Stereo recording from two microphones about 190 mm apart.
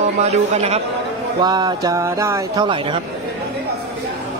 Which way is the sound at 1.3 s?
20° right (ahead or behind).